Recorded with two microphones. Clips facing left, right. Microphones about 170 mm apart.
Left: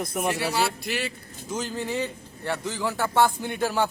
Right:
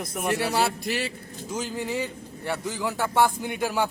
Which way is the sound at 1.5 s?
10° right (ahead or behind).